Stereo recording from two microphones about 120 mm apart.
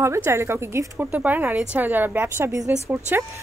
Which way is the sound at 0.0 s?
20° right (ahead or behind).